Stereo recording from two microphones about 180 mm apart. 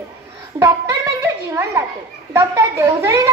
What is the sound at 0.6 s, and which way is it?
A child's voice, 15° right (ahead or behind).